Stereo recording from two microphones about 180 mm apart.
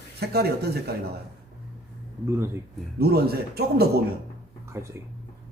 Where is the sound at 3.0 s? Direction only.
60° right (ahead or behind).